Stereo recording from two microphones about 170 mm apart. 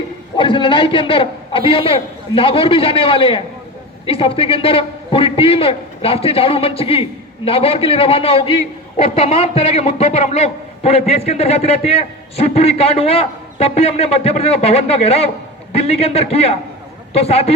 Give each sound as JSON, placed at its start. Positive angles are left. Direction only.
{"t": 0.3, "sound": "a man's voice", "side_deg": 30}